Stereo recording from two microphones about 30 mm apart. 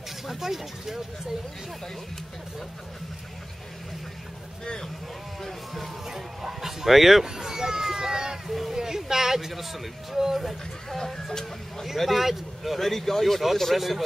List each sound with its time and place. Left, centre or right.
0.3 s speech: centre
5.4 s speech: centre
6.0 s speech: centre
7.2 s speech: centre
8.5 s speech: centre
8.7 s speech: centre
9.5 s speech: centre
11.0 s speech: centre
11.8 s speech: centre